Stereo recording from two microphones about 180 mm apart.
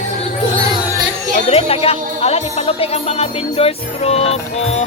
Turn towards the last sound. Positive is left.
turn(degrees=35)  # may be behind; listen again after turning